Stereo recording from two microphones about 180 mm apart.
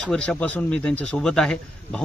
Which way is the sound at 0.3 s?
5° left (ahead or behind).